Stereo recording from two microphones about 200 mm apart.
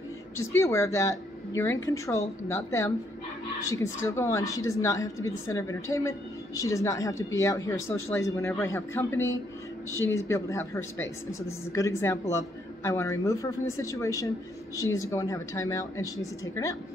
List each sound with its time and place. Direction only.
0.4 s a woman's voice: 15° left (ahead or behind)